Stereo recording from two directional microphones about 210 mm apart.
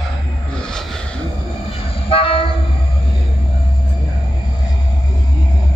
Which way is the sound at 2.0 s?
25° left (ahead or behind).